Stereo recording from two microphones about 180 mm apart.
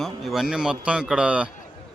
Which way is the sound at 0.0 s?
Centre (ahead or behind).